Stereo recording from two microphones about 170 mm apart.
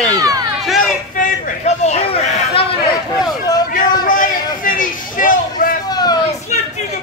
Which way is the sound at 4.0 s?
55° left (ahead or behind).